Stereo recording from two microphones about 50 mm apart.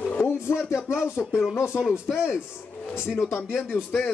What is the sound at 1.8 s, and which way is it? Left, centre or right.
Speech, centre.